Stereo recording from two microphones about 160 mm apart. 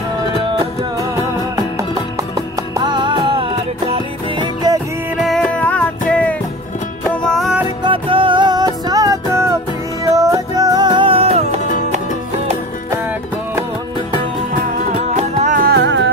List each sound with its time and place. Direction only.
1.8 s music: 20° right (ahead or behind)
5.2 s music: 5° left (ahead or behind)
7.8 s music: 35° right (ahead or behind)
15.1 s music: 55° right (ahead or behind); by 16.1 s 90° right